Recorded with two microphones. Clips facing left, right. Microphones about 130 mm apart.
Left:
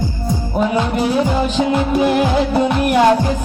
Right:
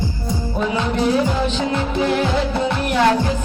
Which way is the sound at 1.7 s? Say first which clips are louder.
Left 4 dB; 15° left (ahead or behind).